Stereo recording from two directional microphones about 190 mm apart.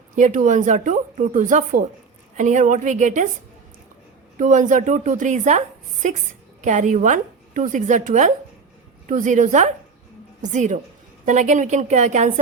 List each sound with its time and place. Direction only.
0.2 s a woman's voice: 40° right (ahead or behind)
4.4 s a woman's voice: 40° right (ahead or behind)